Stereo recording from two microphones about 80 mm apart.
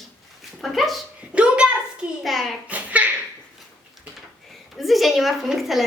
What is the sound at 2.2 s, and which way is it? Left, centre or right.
Speech, centre.